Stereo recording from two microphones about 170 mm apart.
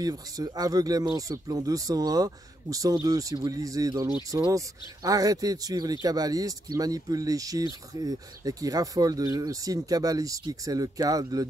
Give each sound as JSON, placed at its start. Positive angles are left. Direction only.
{"t": 0.0, "sound": "speech", "side_deg": -20}